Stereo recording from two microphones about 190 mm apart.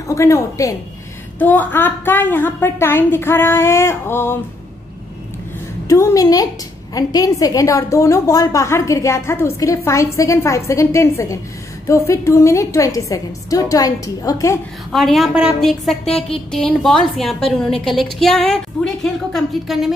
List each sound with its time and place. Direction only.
0.1 s a woman's voice: 15° left (ahead or behind)
5.9 s a woman's voice: 20° left (ahead or behind)
14.9 s a woman's voice: centre (ahead or behind)